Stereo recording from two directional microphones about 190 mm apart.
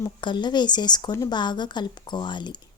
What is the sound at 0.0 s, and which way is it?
Speech, 25° left (ahead or behind).